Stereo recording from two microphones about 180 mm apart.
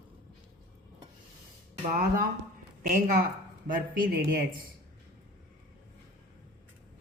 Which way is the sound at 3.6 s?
60° right (ahead or behind).